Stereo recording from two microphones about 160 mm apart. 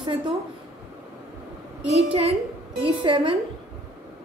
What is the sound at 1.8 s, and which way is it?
A woman's voice, 40° right (ahead or behind).